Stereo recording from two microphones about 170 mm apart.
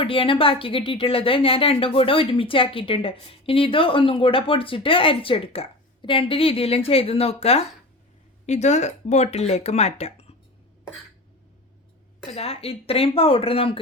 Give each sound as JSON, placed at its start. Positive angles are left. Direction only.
{"t": 0.0, "sound": "a woman's voice", "side_deg": 30}
{"t": 12.3, "sound": "a woman's voice", "side_deg": 35}